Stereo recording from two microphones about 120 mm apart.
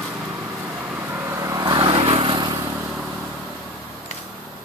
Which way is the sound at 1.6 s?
40° right (ahead or behind).